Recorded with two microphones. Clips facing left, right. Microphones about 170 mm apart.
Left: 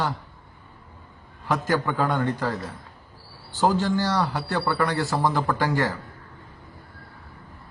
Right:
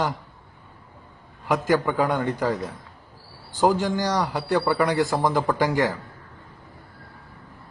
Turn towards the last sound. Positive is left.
turn(degrees=-15)  # may be behind; listen again after turning